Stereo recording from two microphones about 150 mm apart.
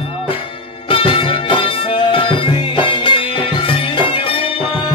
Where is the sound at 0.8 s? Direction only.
35° left (ahead or behind).